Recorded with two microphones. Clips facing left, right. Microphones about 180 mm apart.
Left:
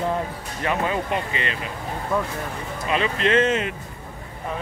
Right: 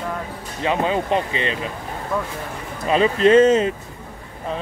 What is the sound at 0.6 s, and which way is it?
Speech, 20° right (ahead or behind).